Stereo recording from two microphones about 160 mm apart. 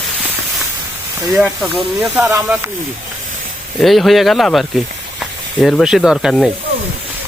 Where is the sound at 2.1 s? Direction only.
20° right (ahead or behind).